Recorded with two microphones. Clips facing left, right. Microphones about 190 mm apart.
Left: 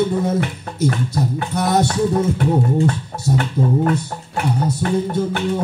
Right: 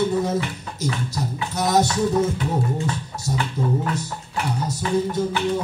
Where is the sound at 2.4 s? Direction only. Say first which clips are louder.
Left 7 dB; 55° left (ahead or behind).